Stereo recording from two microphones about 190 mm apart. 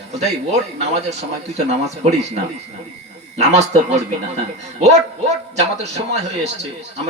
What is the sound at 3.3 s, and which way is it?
Speech, 35° right (ahead or behind).